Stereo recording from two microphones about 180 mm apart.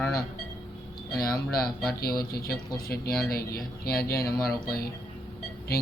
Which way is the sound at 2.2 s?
60° left (ahead or behind).